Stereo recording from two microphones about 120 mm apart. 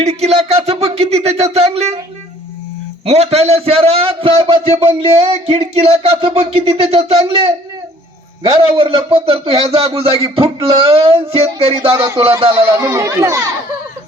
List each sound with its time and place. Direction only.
0.0 s a sound: 65° right (ahead or behind)
3.1 s speech: 60° right (ahead or behind)
8.5 s speech: 50° right (ahead or behind)
12.6 s speech: 25° right (ahead or behind)